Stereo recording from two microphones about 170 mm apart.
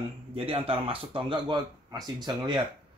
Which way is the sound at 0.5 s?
35° right (ahead or behind).